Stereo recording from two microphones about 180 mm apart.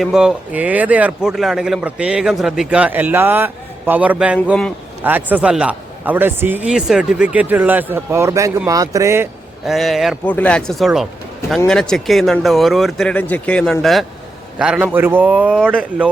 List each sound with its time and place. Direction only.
0.0 s a man's voice: 5° right (ahead or behind)
9.6 s a man's voice: centre (ahead or behind)